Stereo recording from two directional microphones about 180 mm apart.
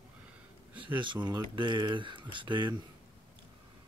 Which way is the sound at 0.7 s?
25° right (ahead or behind).